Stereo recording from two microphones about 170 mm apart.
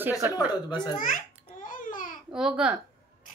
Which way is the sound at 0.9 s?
55° left (ahead or behind).